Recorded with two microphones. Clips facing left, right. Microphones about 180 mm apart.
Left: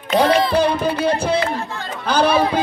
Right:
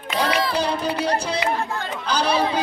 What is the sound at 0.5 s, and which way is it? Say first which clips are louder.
Music: left 5 dB; 55° left (ahead or behind).